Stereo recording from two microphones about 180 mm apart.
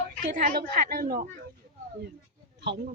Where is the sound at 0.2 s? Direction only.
50° right (ahead or behind).